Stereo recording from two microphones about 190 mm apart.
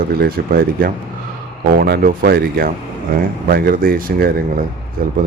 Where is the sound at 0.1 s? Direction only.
55° right (ahead or behind).